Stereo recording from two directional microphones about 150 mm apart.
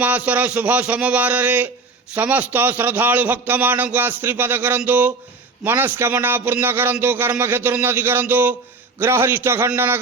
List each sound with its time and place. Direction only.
0.0 s a man's voice: 10° right (ahead or behind)